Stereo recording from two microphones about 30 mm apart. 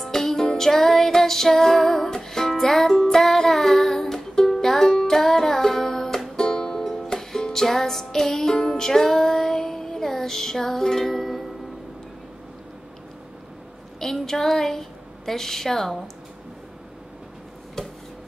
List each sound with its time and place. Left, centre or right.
0.1 s music: centre
3.2 s music: centre
8.8 s music: centre
13.9 s a woman's voice: centre